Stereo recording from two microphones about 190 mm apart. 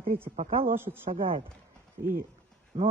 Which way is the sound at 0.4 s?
30° right (ahead or behind).